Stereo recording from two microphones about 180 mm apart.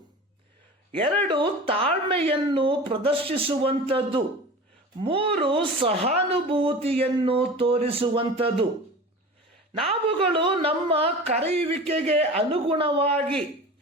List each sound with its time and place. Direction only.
0.9 s speech: 30° right (ahead or behind)
9.7 s speech: 30° right (ahead or behind)
13.1 s speech: 5° left (ahead or behind)